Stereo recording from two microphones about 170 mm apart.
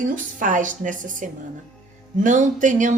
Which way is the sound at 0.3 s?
50° right (ahead or behind).